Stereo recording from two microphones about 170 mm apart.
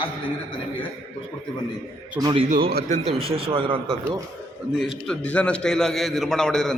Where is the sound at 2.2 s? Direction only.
25° right (ahead or behind).